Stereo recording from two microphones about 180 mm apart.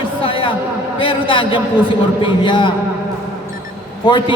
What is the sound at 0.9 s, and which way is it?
A man's voice, 30° left (ahead or behind).